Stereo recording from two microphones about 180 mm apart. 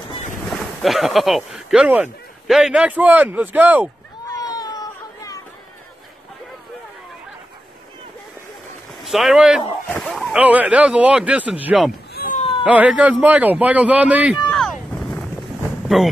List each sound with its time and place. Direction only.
0.5 s speech: centre (ahead or behind)
4.3 s baby cry: 20° left (ahead or behind)
9.0 s speech: centre (ahead or behind)
12.1 s a sound: 60° left (ahead or behind)
12.4 s a sound: 30° left (ahead or behind)
12.6 s speech: 5° right (ahead or behind)